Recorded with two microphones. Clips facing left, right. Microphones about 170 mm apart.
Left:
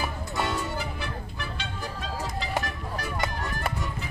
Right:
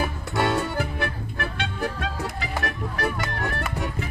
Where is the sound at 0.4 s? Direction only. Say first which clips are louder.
Right 6 dB; 65° right (ahead or behind).